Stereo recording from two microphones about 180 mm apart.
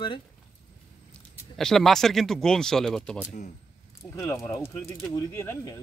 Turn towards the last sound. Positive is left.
turn(degrees=15)  # may be behind; listen again after turning